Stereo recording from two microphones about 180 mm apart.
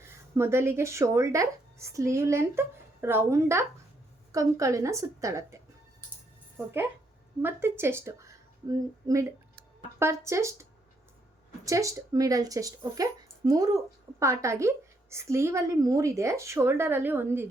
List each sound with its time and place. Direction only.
0.3 s speech: 15° right (ahead or behind)
7.4 s a woman's voice: 15° right (ahead or behind)